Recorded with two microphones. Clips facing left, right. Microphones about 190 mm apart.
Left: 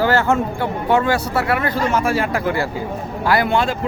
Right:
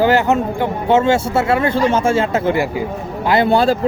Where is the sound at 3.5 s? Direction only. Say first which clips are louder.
Right 5 dB; 35° right (ahead or behind).